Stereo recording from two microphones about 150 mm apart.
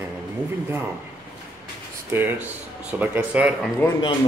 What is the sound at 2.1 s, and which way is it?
Speech, 15° right (ahead or behind).